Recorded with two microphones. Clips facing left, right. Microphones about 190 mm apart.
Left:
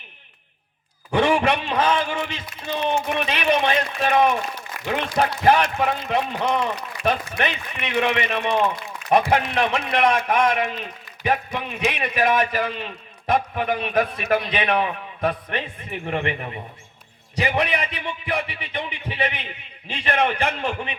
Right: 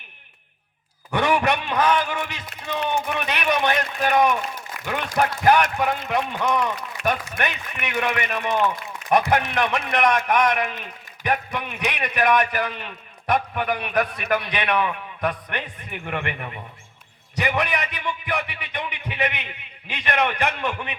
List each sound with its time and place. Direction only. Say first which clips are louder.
1.1 s a man's voice: left 2 dB; 25° left (ahead or behind)